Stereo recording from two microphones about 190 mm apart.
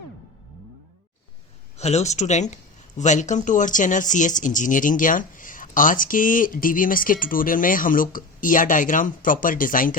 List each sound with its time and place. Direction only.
1.8 s speech: 35° left (ahead or behind)